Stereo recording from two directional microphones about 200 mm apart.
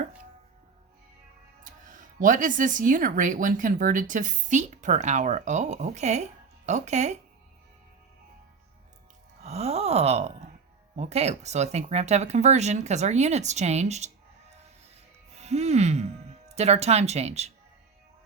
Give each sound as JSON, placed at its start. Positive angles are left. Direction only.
{"t": 1.6, "sound": "speech", "side_deg": -40}
{"t": 9.4, "sound": "gasp", "side_deg": -35}
{"t": 10.9, "sound": "speech", "side_deg": -35}
{"t": 15.4, "sound": "speech", "side_deg": -35}